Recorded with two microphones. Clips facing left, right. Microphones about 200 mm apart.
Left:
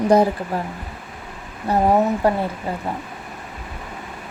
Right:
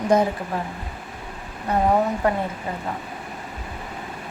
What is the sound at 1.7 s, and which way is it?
Speech, 30° left (ahead or behind).